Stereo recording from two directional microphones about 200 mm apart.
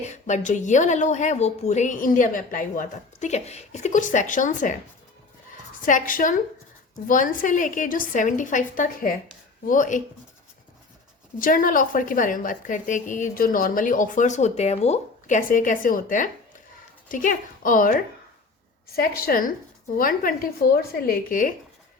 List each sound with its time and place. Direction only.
0.0 s a woman's voice: 35° left (ahead or behind)
5.8 s a woman's voice: 40° left (ahead or behind)
11.3 s a woman's voice: 45° left (ahead or behind)